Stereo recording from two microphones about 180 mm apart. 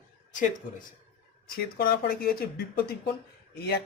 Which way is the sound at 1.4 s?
55° left (ahead or behind).